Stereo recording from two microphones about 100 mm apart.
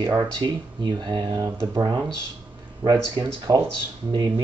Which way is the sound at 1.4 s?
35° right (ahead or behind).